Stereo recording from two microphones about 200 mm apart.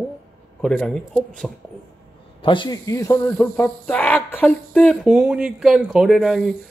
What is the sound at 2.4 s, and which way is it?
A man's voice, 25° left (ahead or behind).